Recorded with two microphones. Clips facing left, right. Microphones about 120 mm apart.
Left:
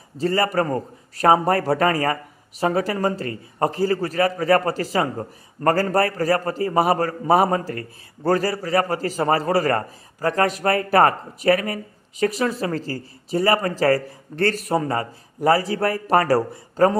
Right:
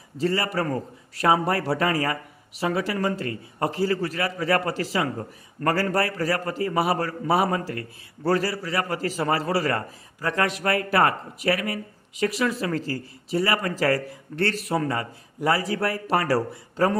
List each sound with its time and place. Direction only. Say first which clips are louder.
0.2 s a man's voice: left 4 dB; 40° left (ahead or behind)